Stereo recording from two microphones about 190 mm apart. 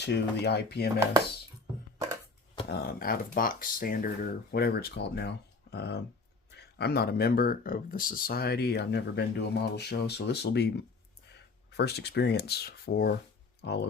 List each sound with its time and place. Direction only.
0.0 s speech: 60° left (ahead or behind)
2.6 s speech: 55° left (ahead or behind)